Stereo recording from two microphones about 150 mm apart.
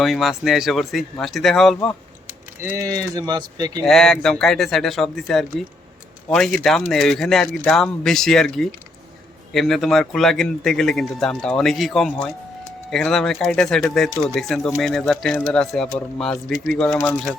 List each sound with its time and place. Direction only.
0.0 s speech: centre (ahead or behind)
2.2 s speech: 15° right (ahead or behind)
3.8 s speech: 5° left (ahead or behind)